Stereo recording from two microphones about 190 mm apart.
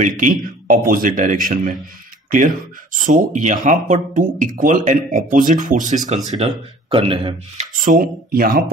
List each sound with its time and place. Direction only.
0.0 s speech: 45° right (ahead or behind); by 7.7 s 25° right (ahead or behind)
7.7 s speech: 50° right (ahead or behind)